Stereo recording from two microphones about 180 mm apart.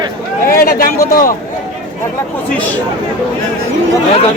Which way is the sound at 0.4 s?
55° left (ahead or behind).